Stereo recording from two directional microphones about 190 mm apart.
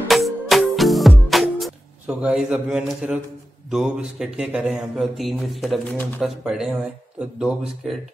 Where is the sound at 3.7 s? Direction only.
5° right (ahead or behind).